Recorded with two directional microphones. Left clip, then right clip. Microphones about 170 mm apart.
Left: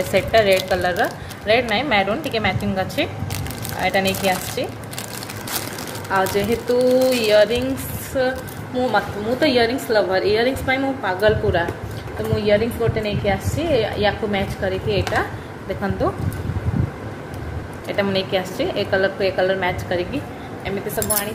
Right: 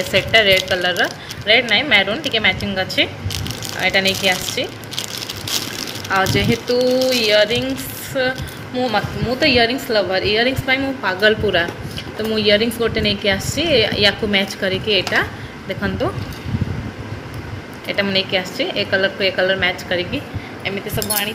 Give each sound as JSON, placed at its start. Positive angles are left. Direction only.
{"t": 0.1, "sound": "speech", "side_deg": 5}
{"t": 6.0, "sound": "speech", "side_deg": 0}
{"t": 7.1, "sound": "a sound", "side_deg": 10}
{"t": 8.2, "sound": "a woman's voice", "side_deg": 5}
{"t": 17.8, "sound": "speech", "side_deg": -5}